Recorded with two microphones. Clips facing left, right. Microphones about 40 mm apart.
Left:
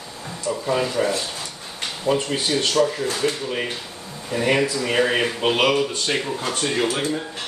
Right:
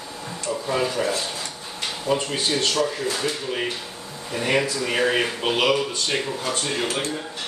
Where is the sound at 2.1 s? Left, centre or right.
Left.